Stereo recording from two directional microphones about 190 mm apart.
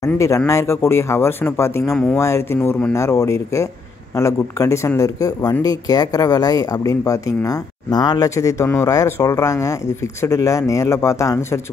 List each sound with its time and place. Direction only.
0.0 s speech: 15° left (ahead or behind)